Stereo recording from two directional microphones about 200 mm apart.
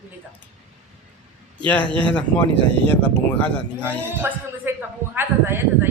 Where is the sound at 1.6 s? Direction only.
5° left (ahead or behind).